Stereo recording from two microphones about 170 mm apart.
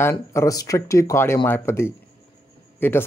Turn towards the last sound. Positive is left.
turn(degrees=10)  # may be behind; listen again after turning